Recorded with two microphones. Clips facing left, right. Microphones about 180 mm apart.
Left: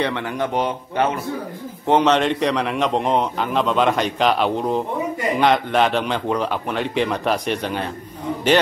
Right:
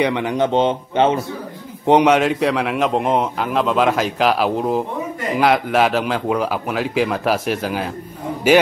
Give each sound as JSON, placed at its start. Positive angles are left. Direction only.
{"t": 0.0, "sound": "speech", "side_deg": -15}
{"t": 1.9, "sound": "a man's voice", "side_deg": -15}